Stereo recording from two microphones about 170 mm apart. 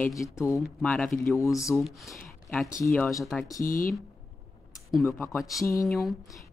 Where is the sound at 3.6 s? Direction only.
55° left (ahead or behind).